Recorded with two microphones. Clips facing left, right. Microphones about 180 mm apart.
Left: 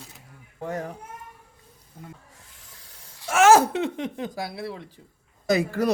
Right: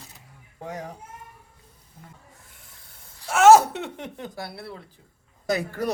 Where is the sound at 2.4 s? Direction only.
90° left.